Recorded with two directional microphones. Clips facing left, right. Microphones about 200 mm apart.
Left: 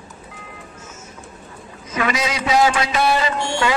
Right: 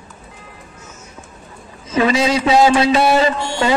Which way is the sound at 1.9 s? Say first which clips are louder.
Right 7 dB; 30° right (ahead or behind).